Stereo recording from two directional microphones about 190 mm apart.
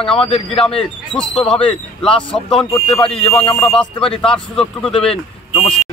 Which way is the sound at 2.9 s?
5° left (ahead or behind).